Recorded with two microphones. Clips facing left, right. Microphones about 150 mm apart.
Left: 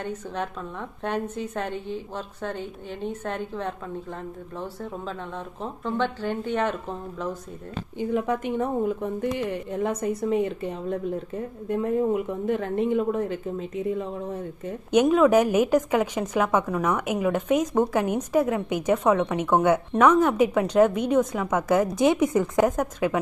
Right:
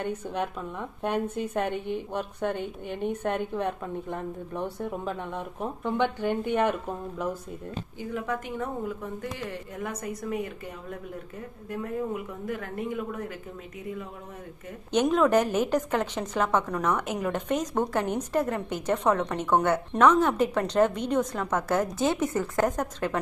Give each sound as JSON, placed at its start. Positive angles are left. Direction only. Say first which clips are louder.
{"t": 0.0, "sound": "a woman's voice", "louder": "right 1 dB", "side_deg": -10}
{"t": 8.0, "sound": "speech", "louder": "left 7 dB", "side_deg": 20}
{"t": 14.9, "sound": "a woman's voice", "louder": "left 4 dB", "side_deg": 10}